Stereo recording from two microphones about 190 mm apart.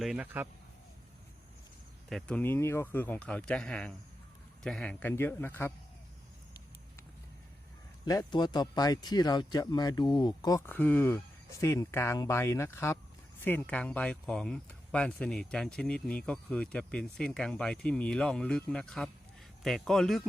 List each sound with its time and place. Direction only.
0.0 s a man's voice: 5° right (ahead or behind)
2.0 s speech: 5° left (ahead or behind)
8.0 s speech: 20° left (ahead or behind); by 20.2 s centre (ahead or behind)